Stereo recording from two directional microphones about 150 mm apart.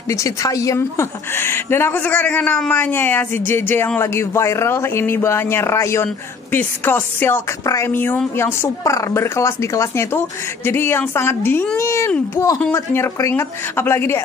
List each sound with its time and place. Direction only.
0.1 s a woman's voice: 20° left (ahead or behind)